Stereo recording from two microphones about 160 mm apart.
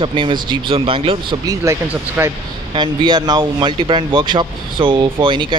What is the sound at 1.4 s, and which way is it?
Speech, 20° right (ahead or behind).